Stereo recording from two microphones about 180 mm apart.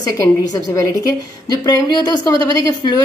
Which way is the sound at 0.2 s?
15° left (ahead or behind).